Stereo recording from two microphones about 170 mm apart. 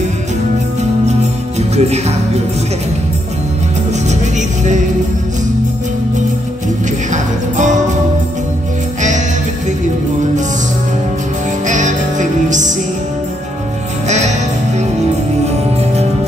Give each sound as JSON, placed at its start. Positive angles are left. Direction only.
{"t": 1.6, "sound": "music", "side_deg": -40}
{"t": 4.1, "sound": "music", "side_deg": -45}
{"t": 7.1, "sound": "music", "side_deg": -45}
{"t": 11.6, "sound": "music", "side_deg": -45}
{"t": 14.0, "sound": "music", "side_deg": -45}